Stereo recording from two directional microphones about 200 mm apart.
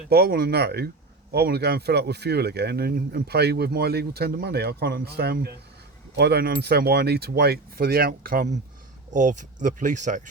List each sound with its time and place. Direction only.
0.1 s speech: 50° right (ahead or behind)